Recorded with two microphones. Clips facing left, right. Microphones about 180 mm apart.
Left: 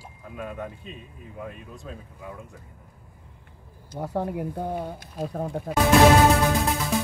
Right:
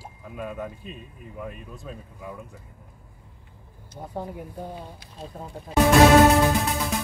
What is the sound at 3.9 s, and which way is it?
Speech, 70° left (ahead or behind).